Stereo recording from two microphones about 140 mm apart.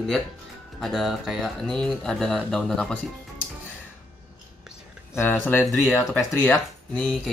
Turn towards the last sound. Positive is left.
turn(degrees=0)  # may be behind; listen again after turning